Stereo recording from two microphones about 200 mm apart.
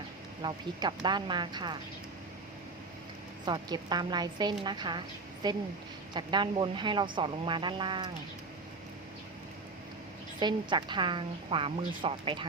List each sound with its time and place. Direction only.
0.4 s a woman's voice: 20° right (ahead or behind)
3.4 s a woman's voice: 20° right (ahead or behind)
10.4 s a woman's voice: 20° right (ahead or behind)